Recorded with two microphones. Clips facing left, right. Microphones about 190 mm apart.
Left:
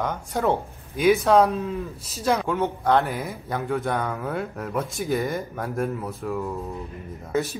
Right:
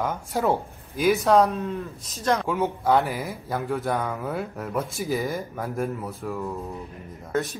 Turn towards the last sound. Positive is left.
turn(degrees=5)  # may be behind; listen again after turning